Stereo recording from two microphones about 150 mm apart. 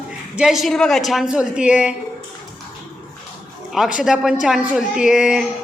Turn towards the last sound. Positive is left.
turn(degrees=-5)  # may be behind; listen again after turning